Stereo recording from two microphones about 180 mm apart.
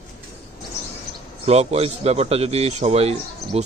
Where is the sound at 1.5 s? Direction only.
35° right (ahead or behind).